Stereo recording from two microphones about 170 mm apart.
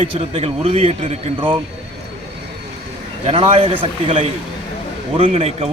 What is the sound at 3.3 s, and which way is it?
Speech, 35° right (ahead or behind).